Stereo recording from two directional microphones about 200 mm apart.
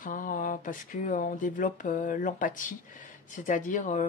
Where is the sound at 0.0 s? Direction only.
40° left (ahead or behind).